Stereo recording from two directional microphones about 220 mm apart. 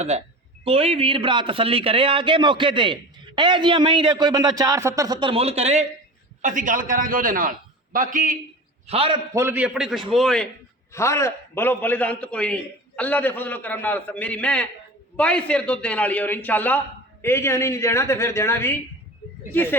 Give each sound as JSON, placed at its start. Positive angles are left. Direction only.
{"t": 0.6, "sound": "a man's voice", "side_deg": -25}
{"t": 8.9, "sound": "a man's voice", "side_deg": -25}